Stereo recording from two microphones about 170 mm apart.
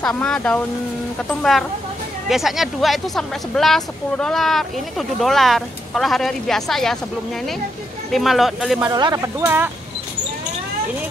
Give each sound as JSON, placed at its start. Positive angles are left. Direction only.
{"t": 0.0, "sound": "speech", "side_deg": 5}
{"t": 8.1, "sound": "speech", "side_deg": 0}
{"t": 8.9, "sound": "speech", "side_deg": -20}